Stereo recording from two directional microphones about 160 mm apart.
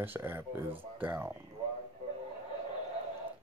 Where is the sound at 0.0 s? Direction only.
10° right (ahead or behind).